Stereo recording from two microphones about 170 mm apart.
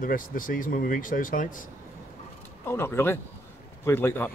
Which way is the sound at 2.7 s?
15° left (ahead or behind).